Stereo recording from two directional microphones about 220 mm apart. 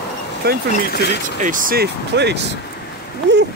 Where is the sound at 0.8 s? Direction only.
45° left (ahead or behind).